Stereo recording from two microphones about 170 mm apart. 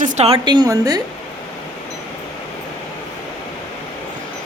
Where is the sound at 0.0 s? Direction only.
45° right (ahead or behind).